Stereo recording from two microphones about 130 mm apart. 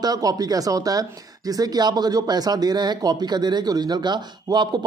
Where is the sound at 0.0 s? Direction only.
30° right (ahead or behind).